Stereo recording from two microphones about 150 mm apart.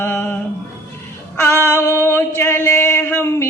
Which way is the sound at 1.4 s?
15° left (ahead or behind).